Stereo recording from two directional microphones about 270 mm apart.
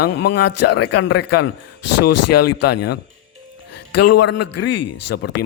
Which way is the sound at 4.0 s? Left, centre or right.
Left.